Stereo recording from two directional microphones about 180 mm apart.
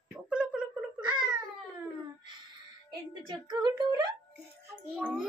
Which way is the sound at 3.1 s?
25° right (ahead or behind).